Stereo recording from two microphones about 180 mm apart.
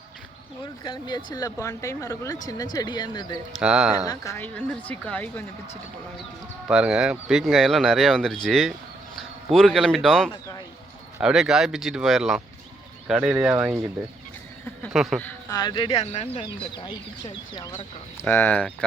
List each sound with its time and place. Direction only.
0.9 s speech: 25° left (ahead or behind)
3.6 s speech: 5° right (ahead or behind)
4.0 s a woman's voice: 20° left (ahead or behind)
6.7 s speech: 5° right (ahead or behind)
14.9 s speech: centre (ahead or behind)
15.2 s speech: 20° left (ahead or behind)
18.2 s a woman's voice: 10° left (ahead or behind)